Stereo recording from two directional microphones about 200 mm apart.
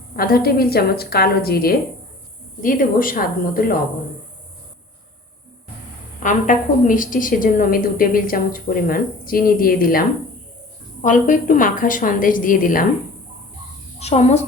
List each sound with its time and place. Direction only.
0.2 s a woman's voice: 50° left (ahead or behind)
6.2 s a woman's voice: 40° left (ahead or behind)
14.0 s a woman's voice: 35° left (ahead or behind)